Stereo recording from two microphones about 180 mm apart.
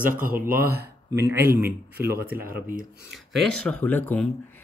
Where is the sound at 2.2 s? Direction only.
55° right (ahead or behind).